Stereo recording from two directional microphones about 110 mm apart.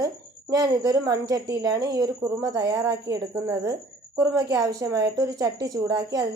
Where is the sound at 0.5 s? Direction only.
35° right (ahead or behind).